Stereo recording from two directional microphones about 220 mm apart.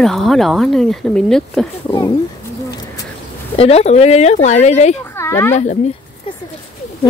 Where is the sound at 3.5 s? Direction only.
25° left (ahead or behind).